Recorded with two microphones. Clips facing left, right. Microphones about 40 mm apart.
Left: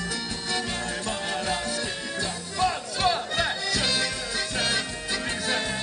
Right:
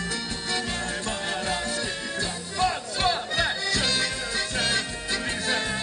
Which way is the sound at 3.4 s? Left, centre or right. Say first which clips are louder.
Right 3 dB; centre.